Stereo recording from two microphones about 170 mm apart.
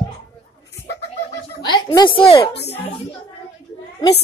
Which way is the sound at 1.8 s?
25° left (ahead or behind).